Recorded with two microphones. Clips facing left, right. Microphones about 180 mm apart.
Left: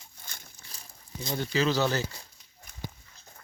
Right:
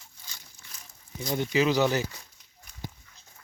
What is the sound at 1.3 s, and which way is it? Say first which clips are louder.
Speech: right 3 dB; 15° right (ahead or behind).